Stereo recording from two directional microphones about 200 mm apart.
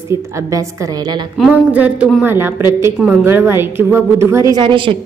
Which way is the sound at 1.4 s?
5° right (ahead or behind).